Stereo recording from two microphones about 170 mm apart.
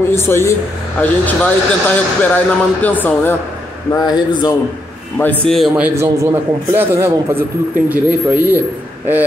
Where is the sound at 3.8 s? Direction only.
25° left (ahead or behind).